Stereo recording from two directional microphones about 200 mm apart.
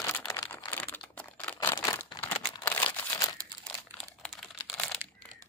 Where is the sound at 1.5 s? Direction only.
10° left (ahead or behind).